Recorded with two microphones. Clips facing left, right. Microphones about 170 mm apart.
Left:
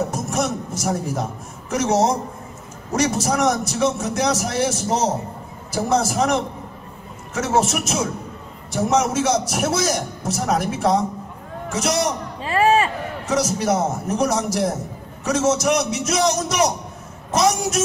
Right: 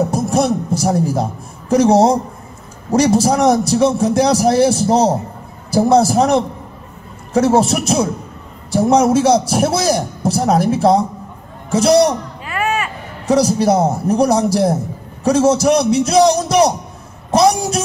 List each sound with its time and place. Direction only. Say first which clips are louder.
0.1 s a man's voice: right 8 dB; 35° right (ahead or behind)
12.4 s a sound: left 4 dB; 30° left (ahead or behind)
13.3 s a man's voice: right 7 dB; 35° right (ahead or behind)